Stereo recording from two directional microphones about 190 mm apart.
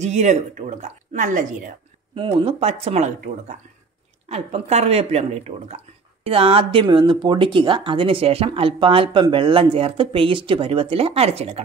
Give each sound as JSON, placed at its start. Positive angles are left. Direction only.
{"t": 0.0, "sound": "a woman's voice", "side_deg": -40}
{"t": 2.1, "sound": "a woman's voice", "side_deg": -30}